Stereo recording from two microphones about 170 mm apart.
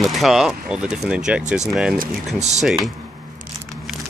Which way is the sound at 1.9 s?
45° right (ahead or behind).